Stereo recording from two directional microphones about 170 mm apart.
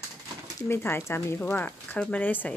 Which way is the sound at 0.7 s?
15° left (ahead or behind).